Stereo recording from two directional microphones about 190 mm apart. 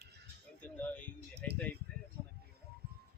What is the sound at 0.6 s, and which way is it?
Speech, 10° left (ahead or behind).